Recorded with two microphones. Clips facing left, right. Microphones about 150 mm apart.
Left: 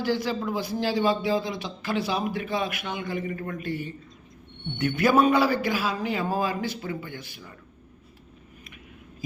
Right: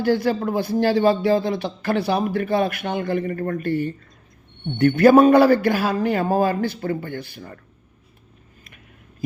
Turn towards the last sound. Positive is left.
turn(degrees=-55)  # may be behind; listen again after turning